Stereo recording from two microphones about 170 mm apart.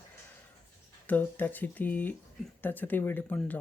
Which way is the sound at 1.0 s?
10° left (ahead or behind).